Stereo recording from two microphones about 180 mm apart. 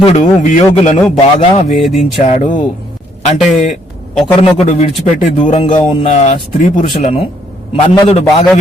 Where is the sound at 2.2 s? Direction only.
40° left (ahead or behind).